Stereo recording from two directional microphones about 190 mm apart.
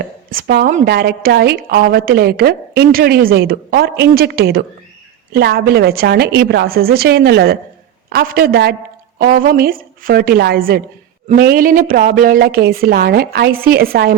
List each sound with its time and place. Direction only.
0.0 s a woman's voice: 50° right (ahead or behind)
0.9 s a woman's voice: 55° right (ahead or behind)